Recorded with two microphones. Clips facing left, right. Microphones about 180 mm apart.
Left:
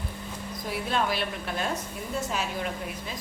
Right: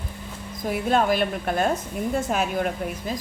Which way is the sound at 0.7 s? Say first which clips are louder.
Right 7 dB; 50° right (ahead or behind).